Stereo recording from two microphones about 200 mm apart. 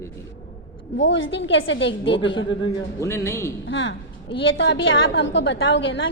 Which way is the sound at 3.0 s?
15° left (ahead or behind).